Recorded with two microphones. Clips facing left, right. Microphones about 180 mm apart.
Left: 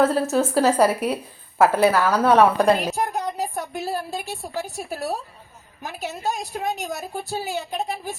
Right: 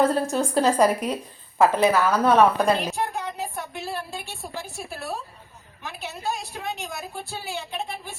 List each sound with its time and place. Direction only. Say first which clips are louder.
0.0 s a woman's voice: left 2 dB; 5° left (ahead or behind)
2.9 s a woman's voice: left 3 dB; 40° left (ahead or behind)